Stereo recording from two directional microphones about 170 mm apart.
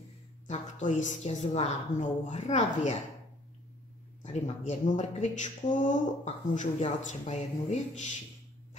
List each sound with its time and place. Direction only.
0.5 s speech: 45° left (ahead or behind)
4.2 s speech: 40° left (ahead or behind)